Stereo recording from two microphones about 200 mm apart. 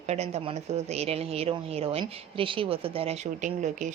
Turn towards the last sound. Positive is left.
turn(degrees=-35)  # may be behind; listen again after turning